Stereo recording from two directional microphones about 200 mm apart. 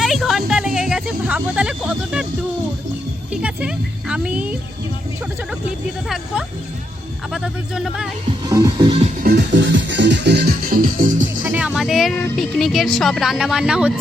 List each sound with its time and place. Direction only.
0.0 s music: centre (ahead or behind)
3.4 s speech: 5° right (ahead or behind)
7.3 s speech: centre (ahead or behind)
8.4 s music: 20° right (ahead or behind)
9.2 s music: 55° right (ahead or behind)
11.4 s speech: 5° right (ahead or behind)